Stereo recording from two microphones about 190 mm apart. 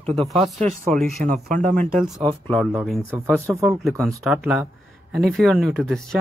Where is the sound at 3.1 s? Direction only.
15° right (ahead or behind).